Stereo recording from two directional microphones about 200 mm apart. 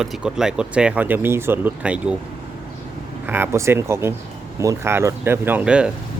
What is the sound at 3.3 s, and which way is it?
Speech, 10° right (ahead or behind).